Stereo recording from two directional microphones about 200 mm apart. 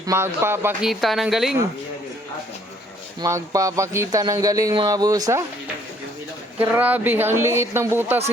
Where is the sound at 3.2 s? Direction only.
15° right (ahead or behind).